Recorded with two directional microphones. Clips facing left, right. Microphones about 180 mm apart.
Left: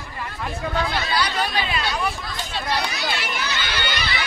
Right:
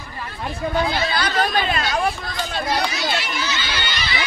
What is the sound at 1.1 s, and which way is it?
Speech, 45° right (ahead or behind).